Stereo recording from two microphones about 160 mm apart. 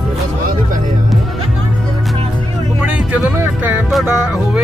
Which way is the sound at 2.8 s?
10° right (ahead or behind).